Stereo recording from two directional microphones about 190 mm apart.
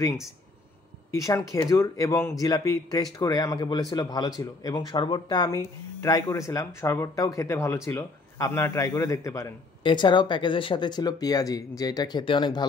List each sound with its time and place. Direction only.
1.1 s speech: 15° left (ahead or behind)